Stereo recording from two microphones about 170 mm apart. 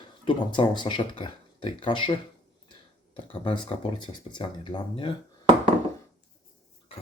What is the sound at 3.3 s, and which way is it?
Speech, 30° left (ahead or behind).